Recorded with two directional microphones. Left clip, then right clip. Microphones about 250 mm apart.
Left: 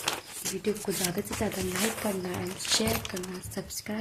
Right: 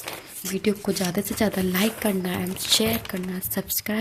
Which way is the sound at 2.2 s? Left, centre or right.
Right.